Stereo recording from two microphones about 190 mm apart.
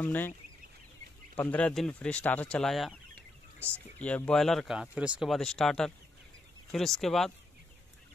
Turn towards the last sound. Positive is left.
turn(degrees=0)  # may be behind; listen again after turning